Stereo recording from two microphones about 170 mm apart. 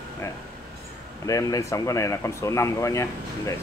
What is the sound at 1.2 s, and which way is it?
Speech, 20° left (ahead or behind).